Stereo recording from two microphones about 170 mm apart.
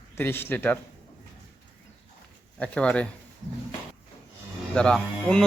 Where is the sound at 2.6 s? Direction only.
5° left (ahead or behind).